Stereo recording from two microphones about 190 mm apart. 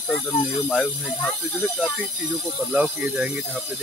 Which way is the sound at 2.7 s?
5° right (ahead or behind).